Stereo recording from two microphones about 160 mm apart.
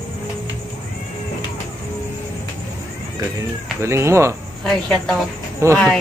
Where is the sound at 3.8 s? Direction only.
15° right (ahead or behind).